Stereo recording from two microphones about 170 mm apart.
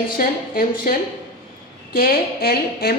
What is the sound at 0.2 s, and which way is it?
A woman's voice, 60° left (ahead or behind).